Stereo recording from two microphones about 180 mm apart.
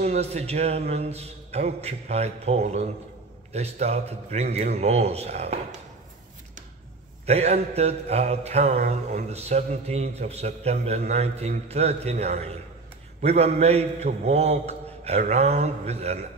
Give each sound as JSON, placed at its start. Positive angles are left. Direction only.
{"t": 0.0, "sound": "mantra", "side_deg": -35}
{"t": 7.2, "sound": "mantra", "side_deg": -35}